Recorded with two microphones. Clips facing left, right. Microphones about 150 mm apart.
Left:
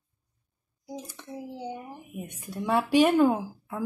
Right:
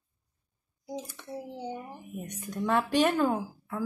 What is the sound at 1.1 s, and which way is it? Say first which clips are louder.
Speech: left 1 dB; 15° left (ahead or behind).